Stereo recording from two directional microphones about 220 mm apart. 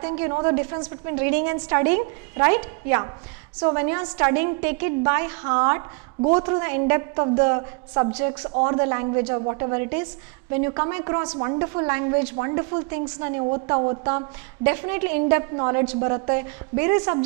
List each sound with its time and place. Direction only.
0.0 s a woman's voice: 10° right (ahead or behind)